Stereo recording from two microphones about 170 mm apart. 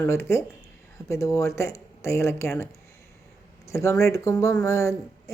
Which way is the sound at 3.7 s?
15° left (ahead or behind).